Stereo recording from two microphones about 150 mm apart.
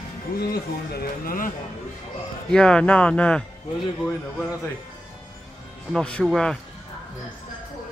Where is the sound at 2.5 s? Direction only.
5° left (ahead or behind).